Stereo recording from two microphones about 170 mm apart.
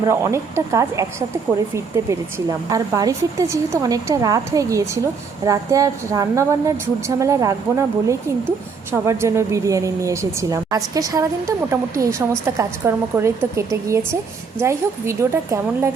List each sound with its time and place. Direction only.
0.0 s a woman's voice: 15° right (ahead or behind)